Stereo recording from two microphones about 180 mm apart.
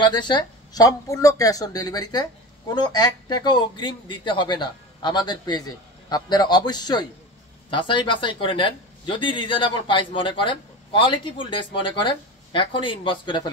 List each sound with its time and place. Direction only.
0.0 s speech: 25° left (ahead or behind)